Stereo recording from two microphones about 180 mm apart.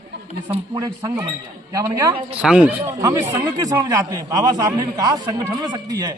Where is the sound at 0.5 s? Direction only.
25° right (ahead or behind).